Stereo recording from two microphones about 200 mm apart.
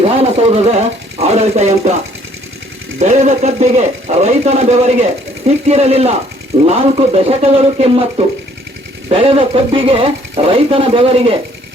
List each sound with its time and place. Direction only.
0.0 s speech: 30° right (ahead or behind)
3.0 s speech: 35° right (ahead or behind)